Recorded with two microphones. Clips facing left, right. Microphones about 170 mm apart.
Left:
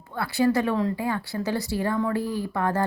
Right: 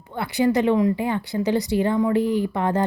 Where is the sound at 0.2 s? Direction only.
20° right (ahead or behind).